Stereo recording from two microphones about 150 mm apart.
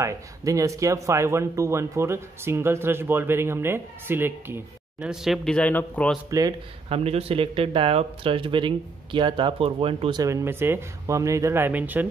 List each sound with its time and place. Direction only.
0.0 s speech: 20° right (ahead or behind)
5.0 s speech: 5° right (ahead or behind)
6.9 s speech: 40° right (ahead or behind)
10.2 s speech: 20° right (ahead or behind)